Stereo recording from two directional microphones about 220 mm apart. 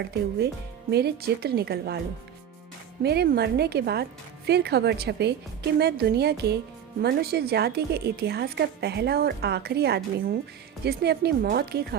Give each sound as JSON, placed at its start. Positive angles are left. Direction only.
{"t": 0.0, "sound": "a woman's voice", "side_deg": -45}
{"t": 3.0, "sound": "a woman's voice", "side_deg": -45}